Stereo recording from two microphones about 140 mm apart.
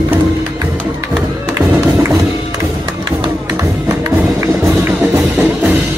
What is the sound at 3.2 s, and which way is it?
Music, 25° right (ahead or behind).